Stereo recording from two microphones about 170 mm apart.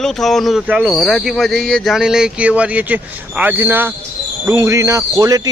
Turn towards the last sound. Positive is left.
turn(degrees=-20)  # may be behind; listen again after turning